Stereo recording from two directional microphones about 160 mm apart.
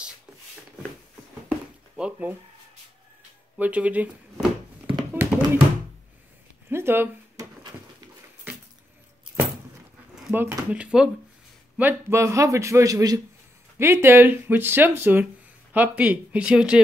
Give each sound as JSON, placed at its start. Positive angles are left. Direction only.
{"t": 2.0, "sound": "speech", "side_deg": -5}
{"t": 3.5, "sound": "speech", "side_deg": -10}
{"t": 5.1, "sound": "tap", "side_deg": -15}
{"t": 6.7, "sound": "a sound", "side_deg": -15}
{"t": 10.1, "sound": "a man's voice", "side_deg": -15}